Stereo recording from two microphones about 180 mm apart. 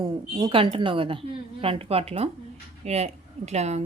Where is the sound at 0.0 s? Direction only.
25° right (ahead or behind).